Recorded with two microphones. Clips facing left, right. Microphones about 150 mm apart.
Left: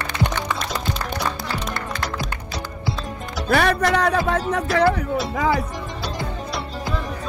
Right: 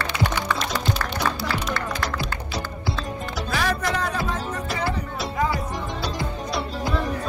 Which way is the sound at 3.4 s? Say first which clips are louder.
Left 7 dB; 65° left (ahead or behind).